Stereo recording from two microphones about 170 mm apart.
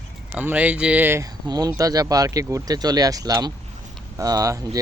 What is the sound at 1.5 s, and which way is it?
Speech, 20° right (ahead or behind).